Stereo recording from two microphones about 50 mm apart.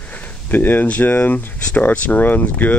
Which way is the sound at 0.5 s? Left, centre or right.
Left.